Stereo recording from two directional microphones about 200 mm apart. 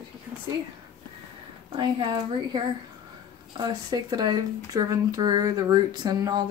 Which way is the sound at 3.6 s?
20° right (ahead or behind).